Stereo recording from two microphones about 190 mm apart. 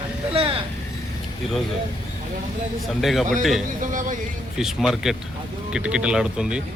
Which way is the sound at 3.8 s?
45° right (ahead or behind).